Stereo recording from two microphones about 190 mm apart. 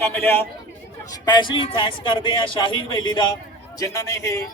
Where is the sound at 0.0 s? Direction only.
10° left (ahead or behind).